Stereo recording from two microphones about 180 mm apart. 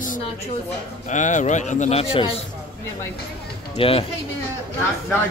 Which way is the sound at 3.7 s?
30° left (ahead or behind).